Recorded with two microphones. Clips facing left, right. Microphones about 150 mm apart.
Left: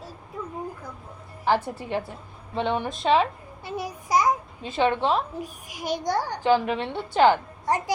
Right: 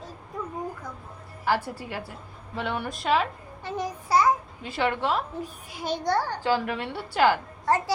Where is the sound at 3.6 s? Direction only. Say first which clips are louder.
Right 1 dB; 10° left (ahead or behind).